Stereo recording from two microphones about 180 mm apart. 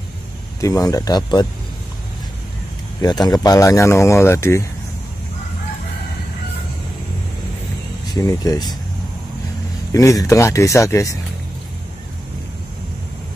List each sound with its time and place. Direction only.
0.6 s speech: 20° left (ahead or behind)
3.0 s speech: 20° left (ahead or behind)
8.1 s speech: 20° left (ahead or behind)
9.9 s speech: 20° left (ahead or behind)